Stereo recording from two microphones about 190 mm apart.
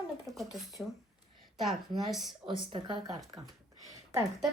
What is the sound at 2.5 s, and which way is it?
Speech, 25° right (ahead or behind).